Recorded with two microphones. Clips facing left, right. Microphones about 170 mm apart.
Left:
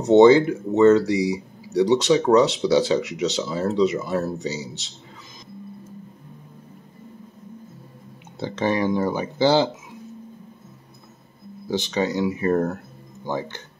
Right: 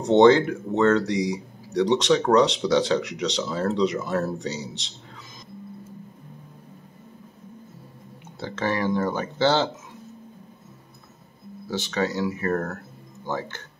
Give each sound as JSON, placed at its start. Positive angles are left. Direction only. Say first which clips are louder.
{"t": 0.0, "sound": "speech", "louder": "left 3 dB", "side_deg": 5}
{"t": 8.4, "sound": "speech", "louder": "left 4 dB", "side_deg": 20}
{"t": 11.6, "sound": "speech", "louder": "left 3 dB", "side_deg": 15}